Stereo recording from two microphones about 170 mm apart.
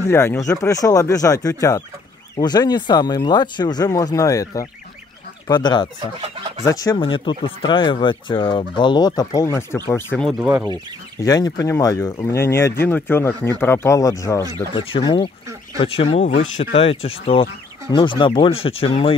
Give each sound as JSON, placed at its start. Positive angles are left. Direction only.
{"t": 0.0, "sound": "fowl", "side_deg": 15}
{"t": 5.9, "sound": "chicken", "side_deg": -30}
{"t": 6.6, "sound": "fowl", "side_deg": 20}
{"t": 7.0, "sound": "fowl", "side_deg": 30}
{"t": 9.8, "sound": "speech", "side_deg": 15}
{"t": 10.2, "sound": "speech", "side_deg": -10}
{"t": 11.2, "sound": "speech", "side_deg": 20}
{"t": 13.6, "sound": "fowl", "side_deg": 15}
{"t": 14.7, "sound": "fowl", "side_deg": 30}
{"t": 15.8, "sound": "speech", "side_deg": 35}